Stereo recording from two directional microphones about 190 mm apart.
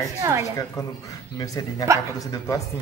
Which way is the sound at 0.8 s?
20° left (ahead or behind).